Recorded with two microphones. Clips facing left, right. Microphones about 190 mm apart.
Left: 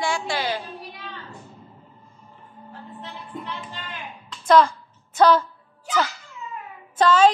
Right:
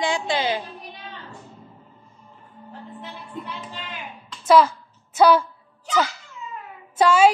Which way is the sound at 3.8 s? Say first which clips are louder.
Right 1 dB; 5° right (ahead or behind).